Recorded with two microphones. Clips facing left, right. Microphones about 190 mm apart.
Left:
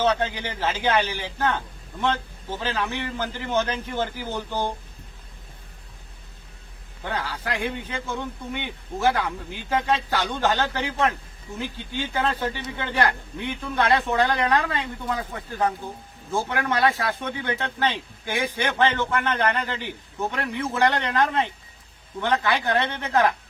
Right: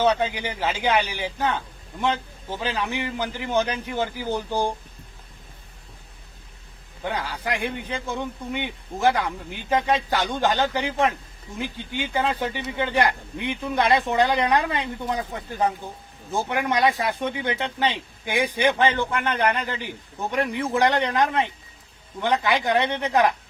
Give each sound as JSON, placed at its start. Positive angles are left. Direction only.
{"t": 0.0, "sound": "a man's voice", "side_deg": -10}
{"t": 7.0, "sound": "a man's voice", "side_deg": -15}